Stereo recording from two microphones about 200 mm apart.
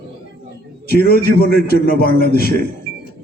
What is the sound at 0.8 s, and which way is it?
A man's voice, 50° left (ahead or behind).